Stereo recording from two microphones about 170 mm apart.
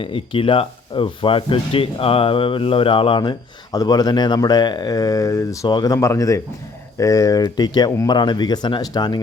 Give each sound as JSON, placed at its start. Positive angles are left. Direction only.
{"t": 0.0, "sound": "speech", "side_deg": 30}